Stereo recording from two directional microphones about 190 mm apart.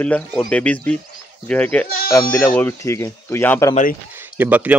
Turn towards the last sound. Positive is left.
turn(degrees=-10)  # may be behind; listen again after turning